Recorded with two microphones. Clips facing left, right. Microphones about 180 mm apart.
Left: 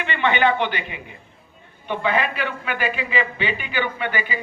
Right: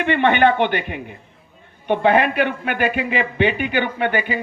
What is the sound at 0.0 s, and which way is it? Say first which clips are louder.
A man's voice: right 5 dB; 55° right (ahead or behind).